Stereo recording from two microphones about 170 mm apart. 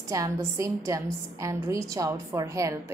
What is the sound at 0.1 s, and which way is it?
A woman's voice, 20° right (ahead or behind).